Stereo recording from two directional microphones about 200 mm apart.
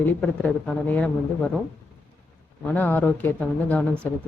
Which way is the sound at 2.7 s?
10° left (ahead or behind).